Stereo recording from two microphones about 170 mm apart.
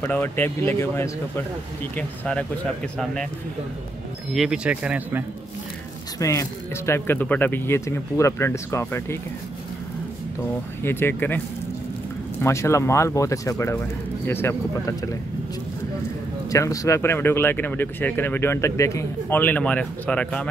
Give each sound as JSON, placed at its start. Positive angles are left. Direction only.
{"t": 0.0, "sound": "speech", "side_deg": 10}
{"t": 4.3, "sound": "speech", "side_deg": -5}
{"t": 6.1, "sound": "speech", "side_deg": 20}
{"t": 10.8, "sound": "speech", "side_deg": 15}
{"t": 16.4, "sound": "speech", "side_deg": 20}